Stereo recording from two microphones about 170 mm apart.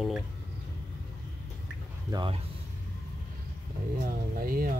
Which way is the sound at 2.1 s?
30° right (ahead or behind).